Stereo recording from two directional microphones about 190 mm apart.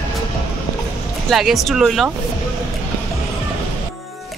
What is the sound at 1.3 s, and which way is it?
Speech, centre (ahead or behind).